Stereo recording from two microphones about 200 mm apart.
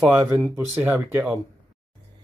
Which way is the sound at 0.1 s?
10° right (ahead or behind).